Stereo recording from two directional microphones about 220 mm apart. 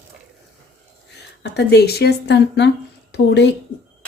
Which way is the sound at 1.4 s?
50° left (ahead or behind).